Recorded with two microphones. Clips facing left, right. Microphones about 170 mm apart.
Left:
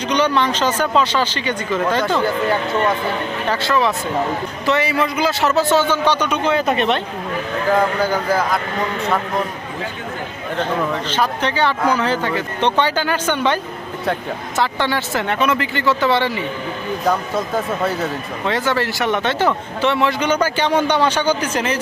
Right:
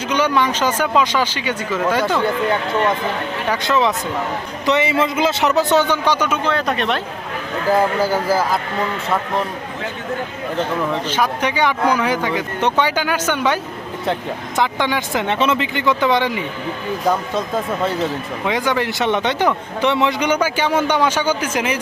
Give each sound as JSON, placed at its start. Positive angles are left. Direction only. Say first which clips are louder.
{"t": 0.1, "sound": "a man's voice", "louder": "even", "side_deg": -10}
{"t": 3.5, "sound": "a man's voice", "louder": "right 1 dB", "side_deg": -20}
{"t": 11.1, "sound": "a man's voice", "louder": "even", "side_deg": -10}
{"t": 14.0, "sound": "speech", "louder": "even", "side_deg": 0}
{"t": 14.6, "sound": "a man's voice", "louder": "even", "side_deg": -15}
{"t": 17.1, "sound": "speech", "louder": "even", "side_deg": 0}
{"t": 18.4, "sound": "a man's voice", "louder": "even", "side_deg": -15}